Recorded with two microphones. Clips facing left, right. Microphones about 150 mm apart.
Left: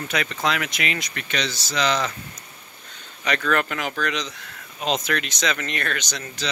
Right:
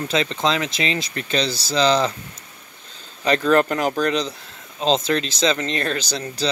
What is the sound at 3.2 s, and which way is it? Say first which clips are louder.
Speech: right 6 dB; 30° right (ahead or behind).